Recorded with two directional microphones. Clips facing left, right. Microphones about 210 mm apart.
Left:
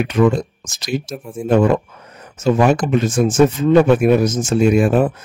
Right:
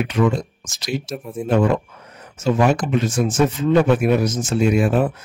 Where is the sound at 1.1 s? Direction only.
Centre (ahead or behind).